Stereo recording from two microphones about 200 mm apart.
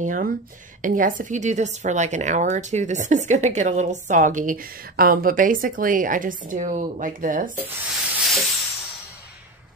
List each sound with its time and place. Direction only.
0.0 s speech: 40° right (ahead or behind)
7.9 s hiss: 5° right (ahead or behind)